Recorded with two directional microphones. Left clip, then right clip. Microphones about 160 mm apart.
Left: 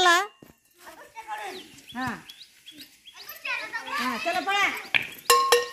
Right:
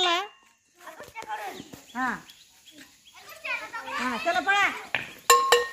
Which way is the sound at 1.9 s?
30° left (ahead or behind).